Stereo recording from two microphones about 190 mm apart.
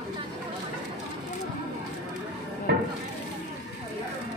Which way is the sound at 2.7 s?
60° right (ahead or behind).